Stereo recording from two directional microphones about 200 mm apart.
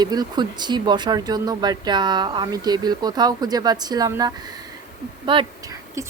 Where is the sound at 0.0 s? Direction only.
20° right (ahead or behind).